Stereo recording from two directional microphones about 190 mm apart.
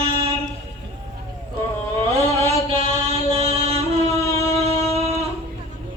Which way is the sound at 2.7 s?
30° right (ahead or behind).